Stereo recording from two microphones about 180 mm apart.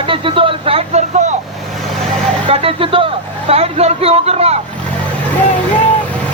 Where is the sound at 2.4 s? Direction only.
30° right (ahead or behind).